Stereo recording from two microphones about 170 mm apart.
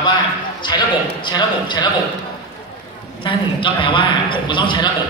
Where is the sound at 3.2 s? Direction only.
30° left (ahead or behind).